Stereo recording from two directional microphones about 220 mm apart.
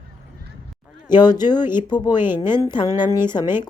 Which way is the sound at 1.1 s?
20° left (ahead or behind).